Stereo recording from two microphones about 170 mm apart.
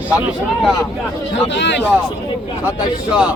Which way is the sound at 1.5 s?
90° left.